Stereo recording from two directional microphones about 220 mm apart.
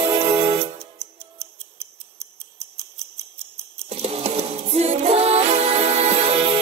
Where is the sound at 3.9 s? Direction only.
25° right (ahead or behind).